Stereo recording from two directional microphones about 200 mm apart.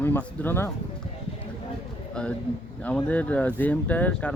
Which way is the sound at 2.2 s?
5° left (ahead or behind).